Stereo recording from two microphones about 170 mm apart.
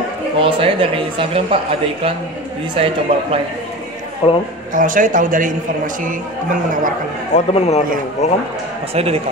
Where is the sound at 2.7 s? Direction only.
35° right (ahead or behind).